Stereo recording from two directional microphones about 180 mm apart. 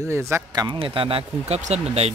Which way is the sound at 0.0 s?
15° right (ahead or behind).